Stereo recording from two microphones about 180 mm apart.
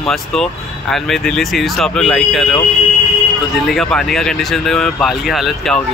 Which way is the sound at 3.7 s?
5° left (ahead or behind).